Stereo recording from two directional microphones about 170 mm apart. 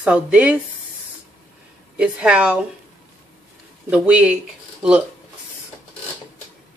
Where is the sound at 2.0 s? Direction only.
5° right (ahead or behind).